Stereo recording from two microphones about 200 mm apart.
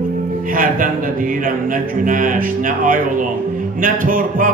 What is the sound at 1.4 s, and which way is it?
Speech, 45° right (ahead or behind).